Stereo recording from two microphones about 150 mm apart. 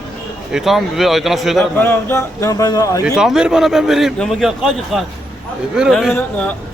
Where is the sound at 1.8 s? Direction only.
15° left (ahead or behind).